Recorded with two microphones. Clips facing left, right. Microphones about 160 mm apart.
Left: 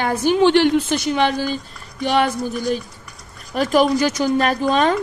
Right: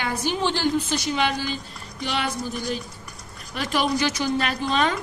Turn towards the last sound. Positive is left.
turn(degrees=45)  # may be behind; listen again after turning